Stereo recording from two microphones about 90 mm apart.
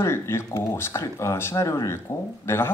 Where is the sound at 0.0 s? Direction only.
30° left (ahead or behind).